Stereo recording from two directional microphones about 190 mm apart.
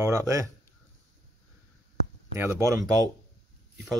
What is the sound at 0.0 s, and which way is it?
Speech, 15° right (ahead or behind).